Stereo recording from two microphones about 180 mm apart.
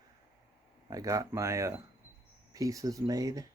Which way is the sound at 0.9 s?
20° right (ahead or behind).